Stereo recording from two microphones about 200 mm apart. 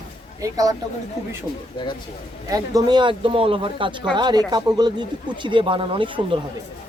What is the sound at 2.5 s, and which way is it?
Speech, 20° right (ahead or behind).